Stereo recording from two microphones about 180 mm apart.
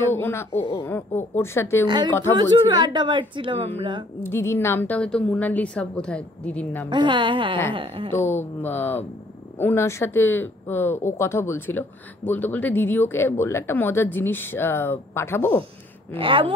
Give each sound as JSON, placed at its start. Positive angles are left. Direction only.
{"t": 0.1, "sound": "speech", "side_deg": 15}
{"t": 2.3, "sound": "a woman's voice", "side_deg": -25}
{"t": 4.2, "sound": "speech", "side_deg": 15}
{"t": 6.9, "sound": "a woman's voice", "side_deg": -25}
{"t": 8.1, "sound": "speech", "side_deg": 10}
{"t": 16.2, "sound": "a woman's voice", "side_deg": -30}